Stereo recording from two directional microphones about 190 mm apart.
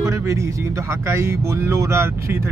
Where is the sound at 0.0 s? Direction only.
15° right (ahead or behind).